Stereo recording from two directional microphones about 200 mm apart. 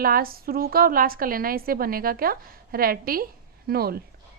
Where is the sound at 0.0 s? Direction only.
45° right (ahead or behind).